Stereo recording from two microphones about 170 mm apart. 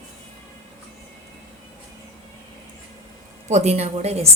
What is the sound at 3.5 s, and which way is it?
Speech, 40° right (ahead or behind).